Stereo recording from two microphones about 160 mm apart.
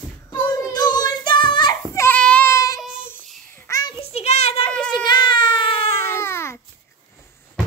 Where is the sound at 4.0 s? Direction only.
40° left (ahead or behind).